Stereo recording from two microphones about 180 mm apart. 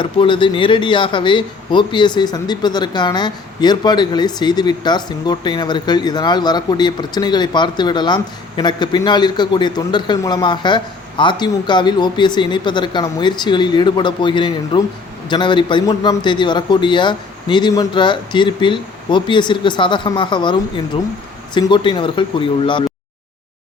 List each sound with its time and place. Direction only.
0.0 s speech: 25° left (ahead or behind)